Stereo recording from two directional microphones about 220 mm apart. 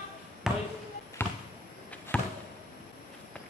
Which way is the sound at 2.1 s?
5° left (ahead or behind).